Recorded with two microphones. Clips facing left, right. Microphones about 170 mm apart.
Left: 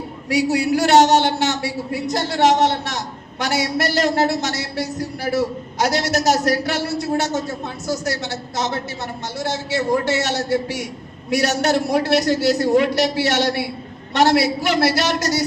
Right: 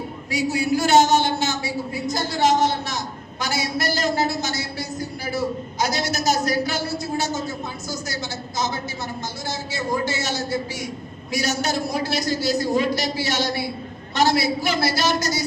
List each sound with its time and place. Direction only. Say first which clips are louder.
0.3 s a man's voice: left 4 dB; 70° left (ahead or behind)